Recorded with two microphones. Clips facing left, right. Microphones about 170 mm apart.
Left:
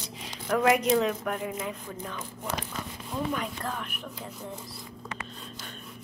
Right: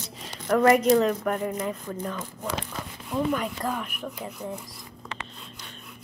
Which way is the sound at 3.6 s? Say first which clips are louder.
Right 5 dB; 15° right (ahead or behind).